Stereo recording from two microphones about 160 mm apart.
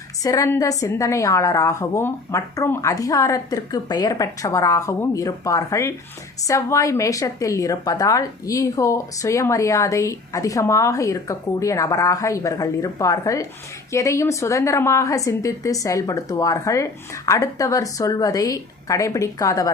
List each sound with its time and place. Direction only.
0.2 s a woman's voice: 20° left (ahead or behind)